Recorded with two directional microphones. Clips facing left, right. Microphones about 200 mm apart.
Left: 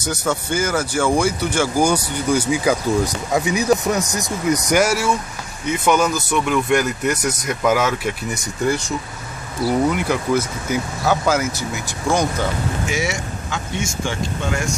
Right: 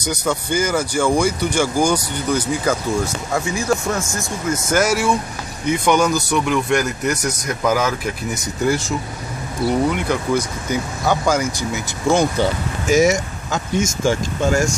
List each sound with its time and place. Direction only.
0.0 s speech: 5° left (ahead or behind)
12.8 s speech: 40° right (ahead or behind)